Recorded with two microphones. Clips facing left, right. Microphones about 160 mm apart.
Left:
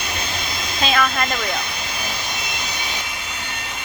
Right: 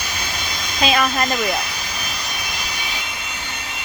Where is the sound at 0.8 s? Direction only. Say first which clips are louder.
Right 2 dB; 15° right (ahead or behind).